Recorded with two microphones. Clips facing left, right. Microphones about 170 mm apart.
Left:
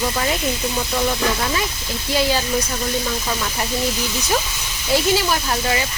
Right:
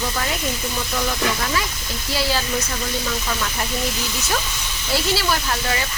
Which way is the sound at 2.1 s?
15° left (ahead or behind).